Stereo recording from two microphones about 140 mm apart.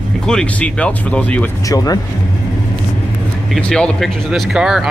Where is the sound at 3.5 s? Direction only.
5° left (ahead or behind).